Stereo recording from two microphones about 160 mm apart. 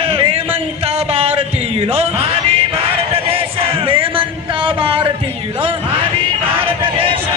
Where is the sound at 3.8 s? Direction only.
35° right (ahead or behind).